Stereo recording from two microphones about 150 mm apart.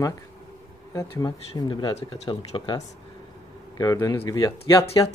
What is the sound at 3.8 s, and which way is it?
Speech, 25° left (ahead or behind).